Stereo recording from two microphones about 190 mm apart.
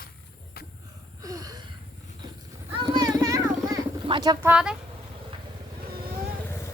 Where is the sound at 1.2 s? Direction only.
20° right (ahead or behind).